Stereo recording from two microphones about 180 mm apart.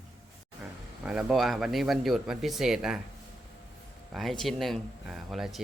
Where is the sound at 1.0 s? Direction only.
5° right (ahead or behind).